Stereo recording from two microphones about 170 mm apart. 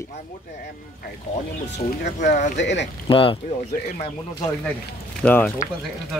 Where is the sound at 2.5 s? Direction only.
90° left.